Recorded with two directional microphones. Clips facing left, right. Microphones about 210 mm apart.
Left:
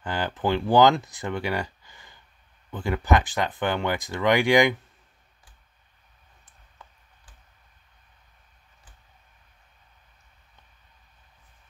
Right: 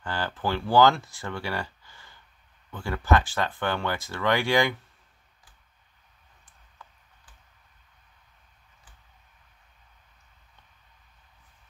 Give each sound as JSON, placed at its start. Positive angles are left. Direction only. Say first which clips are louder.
{"t": 0.0, "sound": "speech", "louder": "left 3 dB", "side_deg": 15}